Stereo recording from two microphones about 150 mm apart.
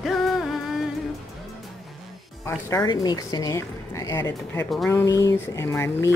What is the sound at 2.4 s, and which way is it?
Speech, 25° left (ahead or behind).